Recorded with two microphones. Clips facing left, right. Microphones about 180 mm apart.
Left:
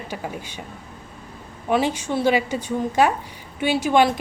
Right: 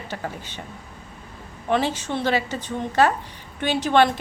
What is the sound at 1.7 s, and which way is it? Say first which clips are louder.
A woman's voice: left 2 dB; 10° left (ahead or behind).